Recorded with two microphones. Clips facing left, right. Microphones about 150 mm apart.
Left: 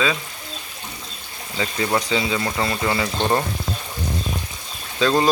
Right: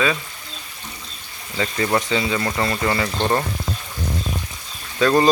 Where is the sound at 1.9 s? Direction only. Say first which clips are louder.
Even; centre (ahead or behind).